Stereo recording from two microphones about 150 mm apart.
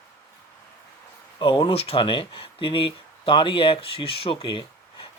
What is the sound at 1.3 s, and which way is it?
Speech, 35° left (ahead or behind).